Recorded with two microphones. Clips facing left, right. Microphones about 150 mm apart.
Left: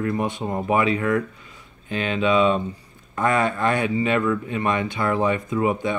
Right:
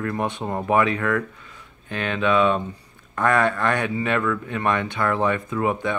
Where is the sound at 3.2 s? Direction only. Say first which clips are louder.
Right 1 dB; 10° left (ahead or behind).